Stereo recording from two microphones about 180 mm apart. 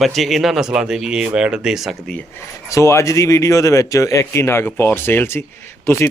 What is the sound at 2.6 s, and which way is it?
A man's voice, 15° left (ahead or behind).